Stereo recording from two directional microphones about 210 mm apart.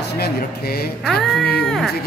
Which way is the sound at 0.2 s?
50° left (ahead or behind).